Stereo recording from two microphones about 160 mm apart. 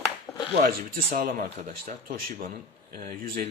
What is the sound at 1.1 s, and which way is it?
Speech, 65° right (ahead or behind).